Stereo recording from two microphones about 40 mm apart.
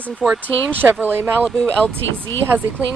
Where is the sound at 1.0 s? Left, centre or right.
Right.